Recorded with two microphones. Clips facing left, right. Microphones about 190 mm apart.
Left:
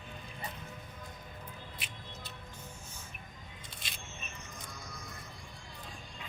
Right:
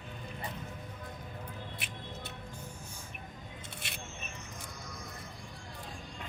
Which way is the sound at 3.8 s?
60° right (ahead or behind).